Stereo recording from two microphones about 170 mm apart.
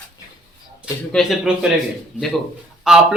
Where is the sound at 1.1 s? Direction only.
Centre (ahead or behind).